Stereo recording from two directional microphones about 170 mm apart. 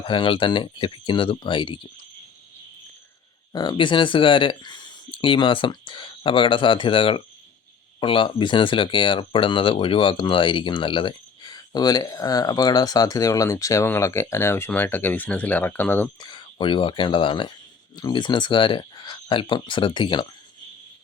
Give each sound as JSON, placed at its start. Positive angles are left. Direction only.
{"t": 0.0, "sound": "speech", "side_deg": 30}
{"t": 3.5, "sound": "speech", "side_deg": 25}
{"t": 16.2, "sound": "speech", "side_deg": 25}